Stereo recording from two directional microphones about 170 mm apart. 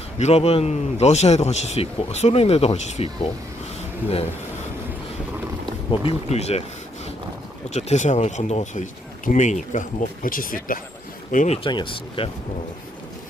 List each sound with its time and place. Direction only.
0.2 s a man's voice: 40° left (ahead or behind)
5.9 s a man's voice: 35° left (ahead or behind)
7.7 s speech: 40° left (ahead or behind)
11.5 s a man's voice: 30° left (ahead or behind)